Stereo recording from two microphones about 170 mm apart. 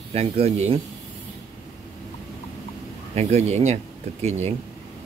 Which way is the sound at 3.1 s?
40° right (ahead or behind).